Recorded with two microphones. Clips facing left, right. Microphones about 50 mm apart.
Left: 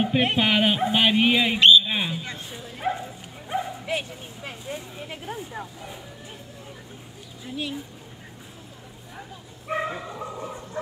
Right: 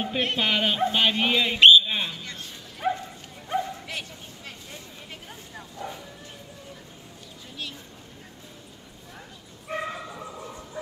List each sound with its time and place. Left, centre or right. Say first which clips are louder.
0.0 s speech: left 4 dB; centre
1.9 s bow-wow: left 3 dB; centre
3.8 s a sound: left 7 dB; centre
5.8 s dog: right 3 dB; centre
7.5 s speech: left 7 dB; centre
9.7 s dog: left 4 dB; centre